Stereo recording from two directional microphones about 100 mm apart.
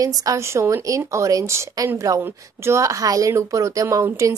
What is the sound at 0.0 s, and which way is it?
A woman's voice, 35° right (ahead or behind).